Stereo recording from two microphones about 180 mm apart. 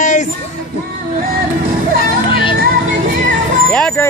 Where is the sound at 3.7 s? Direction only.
5° left (ahead or behind).